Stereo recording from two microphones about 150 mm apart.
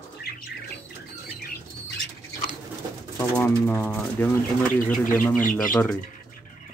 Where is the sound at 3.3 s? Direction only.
10° left (ahead or behind).